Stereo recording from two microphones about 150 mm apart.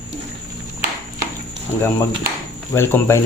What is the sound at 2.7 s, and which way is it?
Speech, 15° left (ahead or behind).